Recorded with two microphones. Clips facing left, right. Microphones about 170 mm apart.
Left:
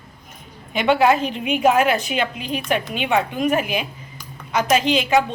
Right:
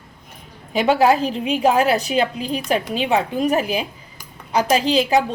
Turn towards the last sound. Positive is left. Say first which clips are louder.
# right 1 dB
turn(degrees=-35)  # may be behind; listen again after turning